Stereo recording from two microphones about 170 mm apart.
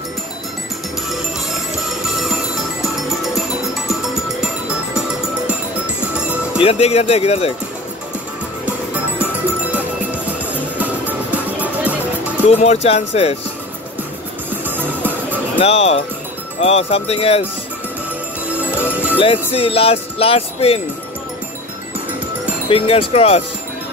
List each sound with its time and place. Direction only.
2.1 s music: centre (ahead or behind)
6.1 s music: 5° right (ahead or behind)
6.6 s speech: 35° left (ahead or behind)
8.9 s music: 10° right (ahead or behind)
12.4 s speech: 40° left (ahead or behind)
14.6 s music: 10° right (ahead or behind)
15.6 s speech: 40° left (ahead or behind)
18.6 s music: 10° right (ahead or behind)
19.1 s speech: 35° left (ahead or behind)
22.7 s speech: 35° left (ahead or behind)